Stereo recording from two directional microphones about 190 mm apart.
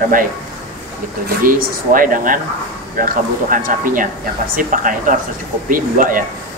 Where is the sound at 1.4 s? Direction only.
45° right (ahead or behind).